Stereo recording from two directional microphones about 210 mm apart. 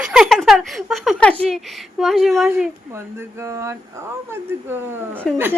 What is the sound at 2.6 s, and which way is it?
Speech, 10° right (ahead or behind).